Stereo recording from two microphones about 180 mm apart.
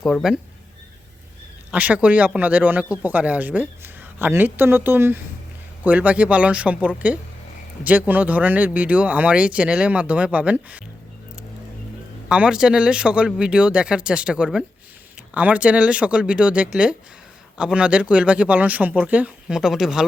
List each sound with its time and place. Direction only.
0.0 s speech: centre (ahead or behind)
1.7 s a man's voice: 10° right (ahead or behind)
12.3 s a man's voice: 5° right (ahead or behind)